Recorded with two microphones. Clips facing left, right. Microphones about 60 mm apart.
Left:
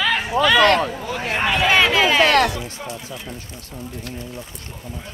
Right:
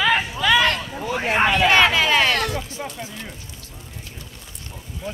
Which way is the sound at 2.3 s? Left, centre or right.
Left.